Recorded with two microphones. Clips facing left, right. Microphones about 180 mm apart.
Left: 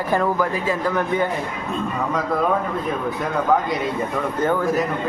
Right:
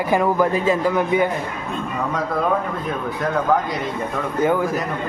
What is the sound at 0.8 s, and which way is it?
Speech, 10° right (ahead or behind).